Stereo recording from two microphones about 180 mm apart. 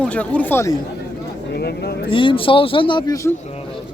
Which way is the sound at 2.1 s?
30° left (ahead or behind).